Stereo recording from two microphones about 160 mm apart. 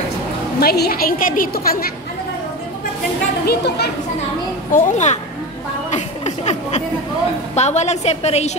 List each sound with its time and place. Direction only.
0.6 s a woman's voice: 75° left (ahead or behind)
3.4 s a child's voice: 90° left
4.7 s a woman's voice: 50° left (ahead or behind)
5.9 s a sound: 45° left (ahead or behind)
7.5 s a woman's voice: 45° left (ahead or behind)